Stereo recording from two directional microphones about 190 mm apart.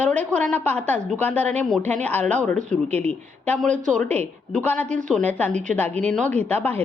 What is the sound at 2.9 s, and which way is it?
Speech, 35° right (ahead or behind).